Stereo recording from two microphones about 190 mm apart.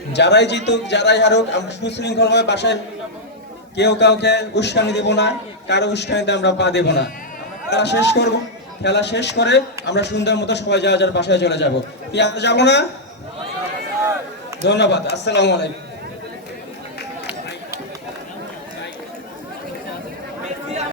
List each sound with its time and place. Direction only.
0.1 s a man's voice: 65° left (ahead or behind)
3.8 s a man's voice: 65° left (ahead or behind)
14.6 s a man's voice: 65° left (ahead or behind)